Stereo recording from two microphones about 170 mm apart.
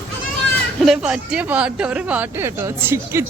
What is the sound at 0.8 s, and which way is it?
Speech, centre (ahead or behind).